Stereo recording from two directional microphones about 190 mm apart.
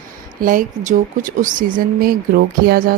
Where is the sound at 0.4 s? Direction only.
45° right (ahead or behind).